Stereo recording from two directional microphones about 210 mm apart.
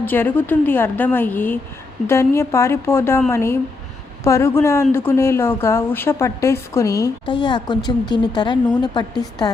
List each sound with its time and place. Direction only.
0.0 s a woman's voice: 10° left (ahead or behind)